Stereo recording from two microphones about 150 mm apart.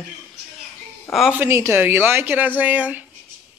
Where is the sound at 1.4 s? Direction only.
20° right (ahead or behind).